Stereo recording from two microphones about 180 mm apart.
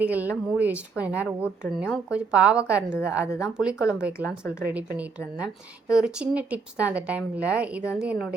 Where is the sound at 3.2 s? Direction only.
15° left (ahead or behind).